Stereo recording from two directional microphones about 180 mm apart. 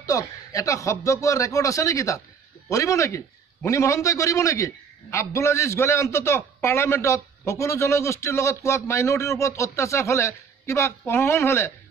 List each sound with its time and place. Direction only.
0.0 s a man's voice: 20° left (ahead or behind)